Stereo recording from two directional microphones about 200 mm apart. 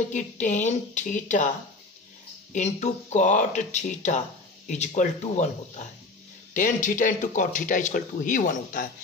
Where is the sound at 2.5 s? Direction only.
35° left (ahead or behind).